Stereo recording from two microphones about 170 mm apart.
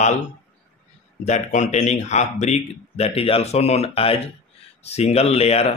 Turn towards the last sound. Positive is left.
turn(degrees=40)  # may be behind; listen again after turning